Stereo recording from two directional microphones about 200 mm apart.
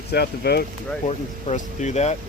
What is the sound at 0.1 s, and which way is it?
Speech, 55° left (ahead or behind).